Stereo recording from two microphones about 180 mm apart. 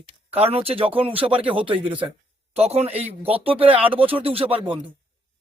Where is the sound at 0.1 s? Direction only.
35° right (ahead or behind).